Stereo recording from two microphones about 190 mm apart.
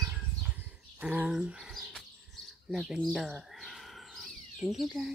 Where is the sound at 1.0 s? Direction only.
10° right (ahead or behind).